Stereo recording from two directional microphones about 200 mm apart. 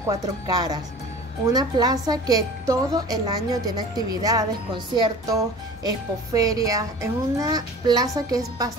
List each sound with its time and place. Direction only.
0.0 s a woman's voice: 20° right (ahead or behind)